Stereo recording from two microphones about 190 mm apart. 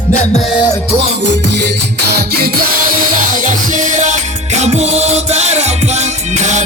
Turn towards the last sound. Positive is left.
turn(degrees=-40)  # may be behind; listen again after turning